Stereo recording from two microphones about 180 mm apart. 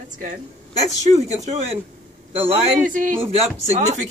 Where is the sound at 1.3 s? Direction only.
30° right (ahead or behind).